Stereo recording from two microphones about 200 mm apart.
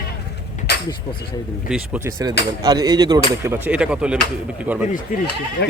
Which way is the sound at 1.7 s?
5° right (ahead or behind).